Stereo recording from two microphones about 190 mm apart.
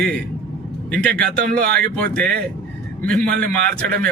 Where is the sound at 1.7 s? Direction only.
5° left (ahead or behind).